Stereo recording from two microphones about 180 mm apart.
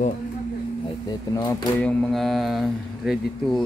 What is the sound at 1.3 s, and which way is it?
Speech, 20° left (ahead or behind).